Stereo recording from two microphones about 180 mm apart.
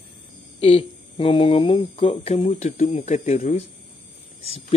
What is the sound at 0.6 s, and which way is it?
Speech, 30° left (ahead or behind).